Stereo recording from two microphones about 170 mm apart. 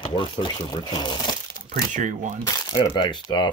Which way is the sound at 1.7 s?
50° right (ahead or behind).